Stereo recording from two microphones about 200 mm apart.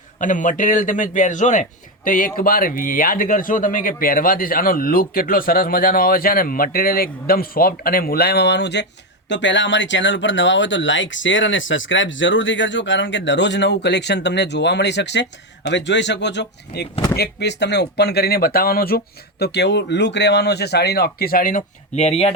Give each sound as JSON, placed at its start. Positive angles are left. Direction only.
{"t": 0.2, "sound": "a man's voice", "side_deg": 40}